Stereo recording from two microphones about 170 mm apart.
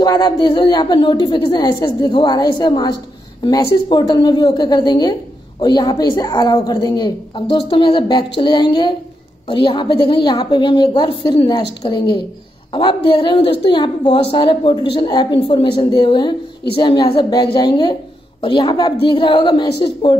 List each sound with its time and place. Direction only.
0.0 s a woman's voice: 25° left (ahead or behind)